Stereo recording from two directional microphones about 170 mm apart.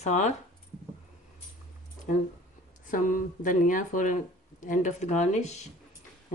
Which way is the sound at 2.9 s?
50° left (ahead or behind).